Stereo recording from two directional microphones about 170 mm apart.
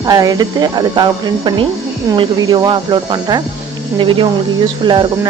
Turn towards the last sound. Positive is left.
turn(degrees=-25)  # may be behind; listen again after turning